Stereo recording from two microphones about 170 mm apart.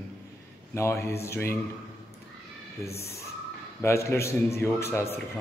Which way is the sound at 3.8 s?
15° left (ahead or behind).